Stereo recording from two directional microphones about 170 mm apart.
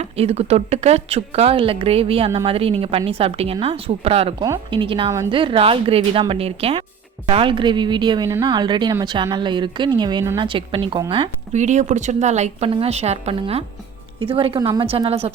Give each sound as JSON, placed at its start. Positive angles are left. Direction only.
{"t": 0.0, "sound": "a woman's voice", "side_deg": -40}